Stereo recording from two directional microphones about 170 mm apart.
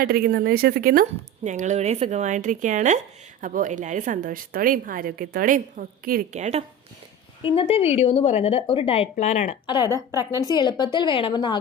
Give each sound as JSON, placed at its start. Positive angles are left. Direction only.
{"t": 0.0, "sound": "a woman's voice", "side_deg": -60}
{"t": 1.5, "sound": "a woman's voice", "side_deg": -45}
{"t": 6.4, "sound": "speech", "side_deg": -40}
{"t": 7.4, "sound": "speech", "side_deg": 30}
{"t": 9.6, "sound": "speech", "side_deg": 25}
{"t": 9.9, "sound": "a woman's voice", "side_deg": -15}
{"t": 10.4, "sound": "speech", "side_deg": 25}